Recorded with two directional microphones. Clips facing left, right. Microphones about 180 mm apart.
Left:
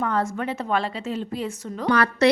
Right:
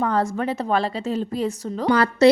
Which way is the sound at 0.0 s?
35° right (ahead or behind).